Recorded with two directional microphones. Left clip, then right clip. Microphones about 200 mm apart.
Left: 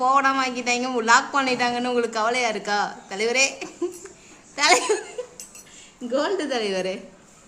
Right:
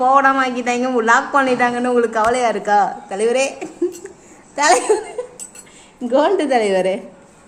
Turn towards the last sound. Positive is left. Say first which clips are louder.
# right 10 dB
turn(degrees=5)  # may be behind; listen again after turning